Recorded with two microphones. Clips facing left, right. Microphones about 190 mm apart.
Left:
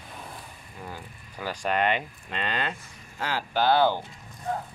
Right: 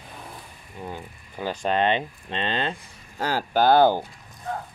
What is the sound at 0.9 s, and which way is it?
Speech, 25° right (ahead or behind).